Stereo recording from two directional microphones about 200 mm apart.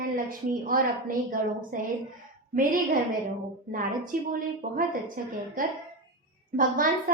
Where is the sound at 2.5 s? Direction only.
45° right (ahead or behind).